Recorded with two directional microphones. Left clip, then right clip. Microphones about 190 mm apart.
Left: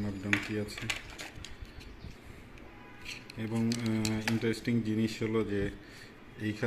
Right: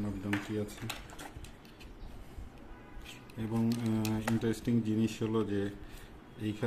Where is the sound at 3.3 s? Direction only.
5° right (ahead or behind).